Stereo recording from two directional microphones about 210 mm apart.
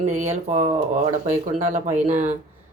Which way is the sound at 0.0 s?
30° right (ahead or behind).